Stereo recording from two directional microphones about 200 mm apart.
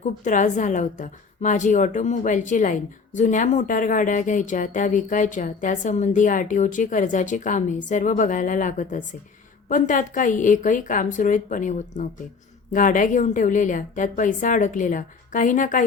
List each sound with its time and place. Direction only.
0.0 s speech: 40° left (ahead or behind)